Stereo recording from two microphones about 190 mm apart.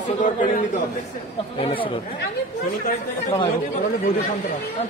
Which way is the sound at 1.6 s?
30° left (ahead or behind).